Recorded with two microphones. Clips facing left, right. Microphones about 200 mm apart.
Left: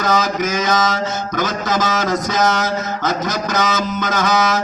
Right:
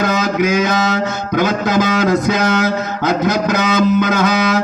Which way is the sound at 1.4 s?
60° right (ahead or behind).